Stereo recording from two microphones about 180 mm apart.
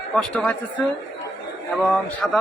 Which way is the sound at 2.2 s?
5° left (ahead or behind).